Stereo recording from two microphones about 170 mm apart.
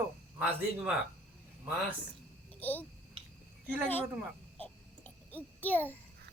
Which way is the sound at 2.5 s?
10° left (ahead or behind).